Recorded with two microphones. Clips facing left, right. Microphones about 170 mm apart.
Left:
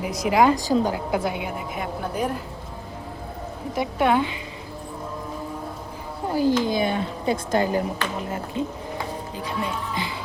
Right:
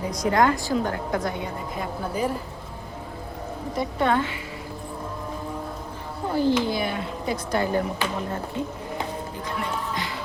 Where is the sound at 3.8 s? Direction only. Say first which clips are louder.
Left 2 dB; 5° left (ahead or behind).